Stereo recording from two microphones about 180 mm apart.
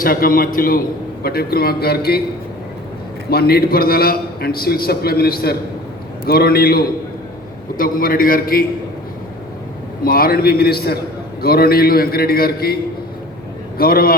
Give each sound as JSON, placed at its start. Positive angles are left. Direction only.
{"t": 0.0, "sound": "a man's voice", "side_deg": 50}
{"t": 3.2, "sound": "a man's voice", "side_deg": 60}
{"t": 10.0, "sound": "a man's voice", "side_deg": 55}
{"t": 13.7, "sound": "a man's voice", "side_deg": 55}